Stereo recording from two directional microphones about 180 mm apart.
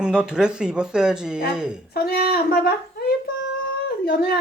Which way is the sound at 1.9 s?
60° left (ahead or behind).